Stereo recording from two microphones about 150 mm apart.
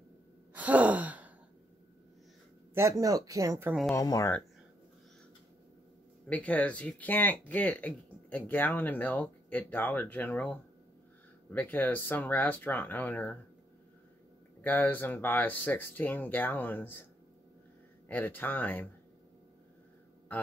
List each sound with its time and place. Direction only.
0.6 s sigh: 10° right (ahead or behind)
2.7 s speech: 20° right (ahead or behind)
3.9 s speech: 20° left (ahead or behind)
6.2 s speech: 10° left (ahead or behind)
14.6 s speech: 10° left (ahead or behind)
18.0 s speech: 15° left (ahead or behind)